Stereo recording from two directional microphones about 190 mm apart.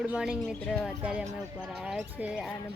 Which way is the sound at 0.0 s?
5° right (ahead or behind).